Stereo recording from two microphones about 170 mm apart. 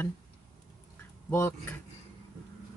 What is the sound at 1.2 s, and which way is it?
Speech, 15° left (ahead or behind).